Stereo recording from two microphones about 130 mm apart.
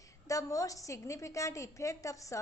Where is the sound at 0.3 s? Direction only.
25° left (ahead or behind).